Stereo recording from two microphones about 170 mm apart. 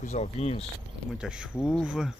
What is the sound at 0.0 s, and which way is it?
Speech, 40° left (ahead or behind).